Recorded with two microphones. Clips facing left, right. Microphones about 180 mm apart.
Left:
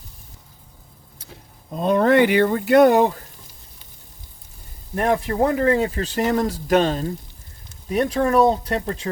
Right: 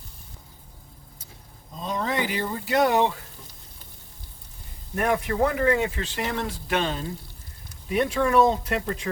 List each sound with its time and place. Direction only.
1.2 s speech: 65° left (ahead or behind); by 3.1 s 50° left (ahead or behind)
4.9 s speech: 30° left (ahead or behind)